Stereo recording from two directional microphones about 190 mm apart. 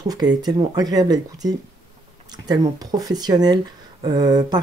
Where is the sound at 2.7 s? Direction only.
20° right (ahead or behind).